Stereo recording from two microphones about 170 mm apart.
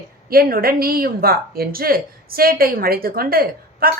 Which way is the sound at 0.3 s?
60° right (ahead or behind).